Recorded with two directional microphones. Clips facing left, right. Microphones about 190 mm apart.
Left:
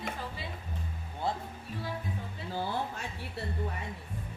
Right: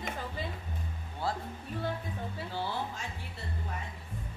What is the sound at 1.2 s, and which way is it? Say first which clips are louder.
Music: left 1 dB; 20° left (ahead or behind).